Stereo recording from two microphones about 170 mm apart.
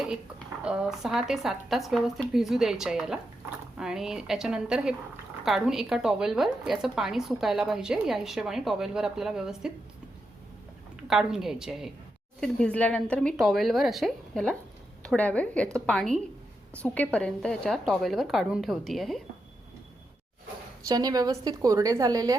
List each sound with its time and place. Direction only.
0.6 s a woman's voice: 5° right (ahead or behind)
11.1 s a woman's voice: centre (ahead or behind)
20.8 s a woman's voice: 20° right (ahead or behind)